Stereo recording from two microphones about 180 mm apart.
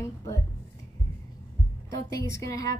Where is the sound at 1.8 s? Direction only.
15° left (ahead or behind).